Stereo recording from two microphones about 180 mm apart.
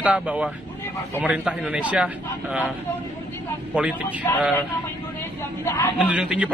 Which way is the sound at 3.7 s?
10° right (ahead or behind).